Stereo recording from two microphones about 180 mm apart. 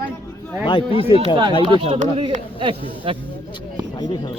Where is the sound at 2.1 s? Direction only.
30° right (ahead or behind).